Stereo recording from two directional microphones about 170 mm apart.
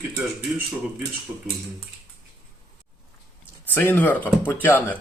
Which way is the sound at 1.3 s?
10° right (ahead or behind).